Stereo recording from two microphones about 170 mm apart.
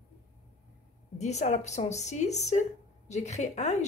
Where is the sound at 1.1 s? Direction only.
40° left (ahead or behind).